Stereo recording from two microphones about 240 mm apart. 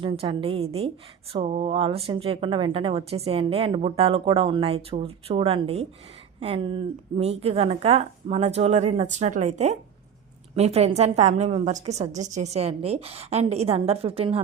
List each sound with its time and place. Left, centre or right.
0.0 s a woman's voice: right